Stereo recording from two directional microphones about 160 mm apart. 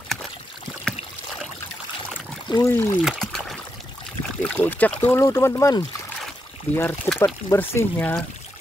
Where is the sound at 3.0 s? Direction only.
Centre (ahead or behind).